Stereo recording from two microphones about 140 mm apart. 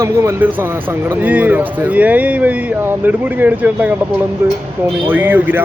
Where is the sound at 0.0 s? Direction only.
20° right (ahead or behind).